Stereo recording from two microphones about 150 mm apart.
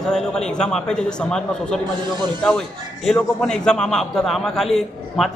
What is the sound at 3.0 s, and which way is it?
A man's voice, 5° left (ahead or behind).